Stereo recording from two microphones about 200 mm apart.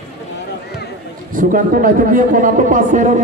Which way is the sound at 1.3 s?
45° right (ahead or behind).